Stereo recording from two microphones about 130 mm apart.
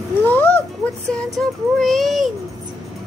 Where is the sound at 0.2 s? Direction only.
15° left (ahead or behind).